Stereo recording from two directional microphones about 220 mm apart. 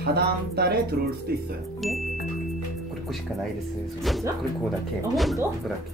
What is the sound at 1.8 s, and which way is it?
Speech, centre (ahead or behind).